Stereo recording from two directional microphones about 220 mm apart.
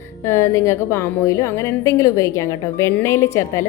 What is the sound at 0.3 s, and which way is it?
A woman's voice, 15° left (ahead or behind).